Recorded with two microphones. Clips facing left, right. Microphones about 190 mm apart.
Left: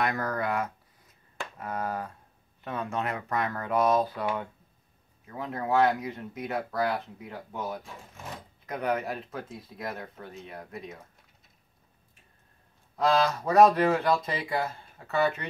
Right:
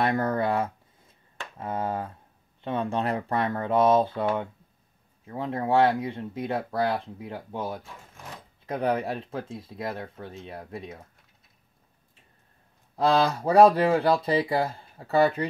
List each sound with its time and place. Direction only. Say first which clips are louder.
0.0 s speech: right 4 dB; 30° right (ahead or behind)
12.9 s speech: right 2 dB; 30° right (ahead or behind)